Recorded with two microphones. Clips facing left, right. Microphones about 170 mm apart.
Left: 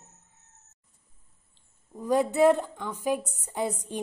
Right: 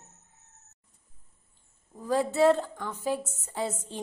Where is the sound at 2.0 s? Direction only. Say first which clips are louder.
Left 2 dB; 15° left (ahead or behind).